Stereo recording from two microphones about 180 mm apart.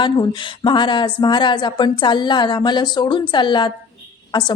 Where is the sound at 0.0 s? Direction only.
25° left (ahead or behind).